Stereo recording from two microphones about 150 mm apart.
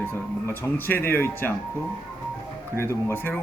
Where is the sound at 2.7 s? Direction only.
15° left (ahead or behind).